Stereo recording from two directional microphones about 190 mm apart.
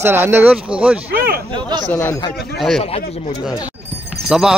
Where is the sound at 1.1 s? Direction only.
55° right (ahead or behind).